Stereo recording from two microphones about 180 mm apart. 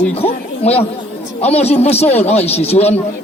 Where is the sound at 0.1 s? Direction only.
35° left (ahead or behind).